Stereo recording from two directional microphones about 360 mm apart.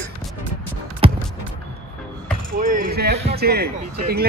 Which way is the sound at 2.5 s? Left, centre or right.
Right.